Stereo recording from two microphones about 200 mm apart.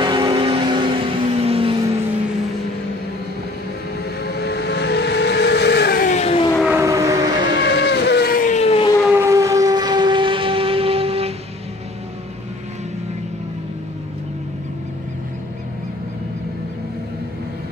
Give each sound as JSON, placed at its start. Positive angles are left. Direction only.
{"t": 0.0, "sound": "vehicle", "side_deg": -20}
{"t": 4.2, "sound": "vehicle", "side_deg": 55}
{"t": 6.6, "sound": "train", "side_deg": -10}
{"t": 7.6, "sound": "vehicle", "side_deg": 55}
{"t": 9.0, "sound": "siren", "side_deg": -10}